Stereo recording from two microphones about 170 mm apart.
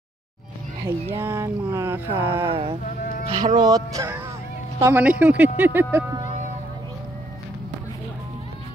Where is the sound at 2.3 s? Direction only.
30° right (ahead or behind).